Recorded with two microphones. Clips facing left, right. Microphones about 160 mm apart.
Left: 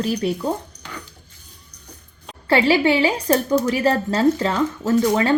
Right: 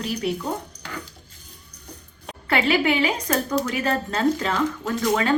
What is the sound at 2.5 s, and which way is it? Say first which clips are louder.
A woman's voice: left 4 dB; 30° left (ahead or behind).